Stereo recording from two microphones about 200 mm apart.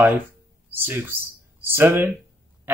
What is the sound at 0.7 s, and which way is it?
Speech, 10° right (ahead or behind).